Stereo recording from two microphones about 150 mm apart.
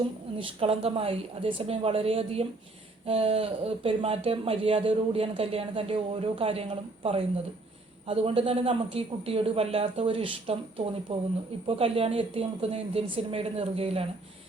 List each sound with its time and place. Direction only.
0.3 s speech: 40° right (ahead or behind)